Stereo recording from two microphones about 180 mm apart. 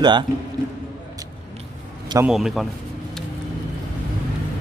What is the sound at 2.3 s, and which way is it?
Speech, centre (ahead or behind).